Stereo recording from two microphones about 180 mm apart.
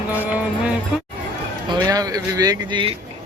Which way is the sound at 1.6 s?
25° right (ahead or behind).